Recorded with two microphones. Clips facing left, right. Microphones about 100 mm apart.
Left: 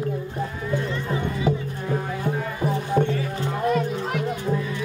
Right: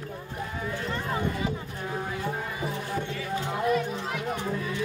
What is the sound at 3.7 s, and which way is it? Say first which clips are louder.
Music: left 4 dB; 50° left (ahead or behind).